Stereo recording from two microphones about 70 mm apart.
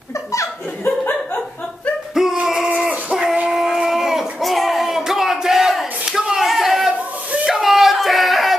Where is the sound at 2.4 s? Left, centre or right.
Centre.